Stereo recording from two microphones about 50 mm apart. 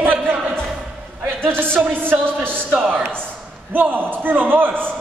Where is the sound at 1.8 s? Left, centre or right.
Right.